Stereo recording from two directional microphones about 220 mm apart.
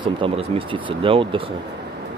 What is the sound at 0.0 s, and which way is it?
Speech, 25° right (ahead or behind).